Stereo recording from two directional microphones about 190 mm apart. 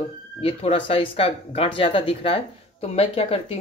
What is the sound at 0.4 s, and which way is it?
Speech, 30° left (ahead or behind).